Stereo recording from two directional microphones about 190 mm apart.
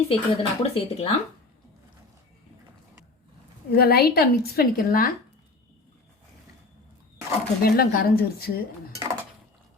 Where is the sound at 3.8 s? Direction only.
55° left (ahead or behind).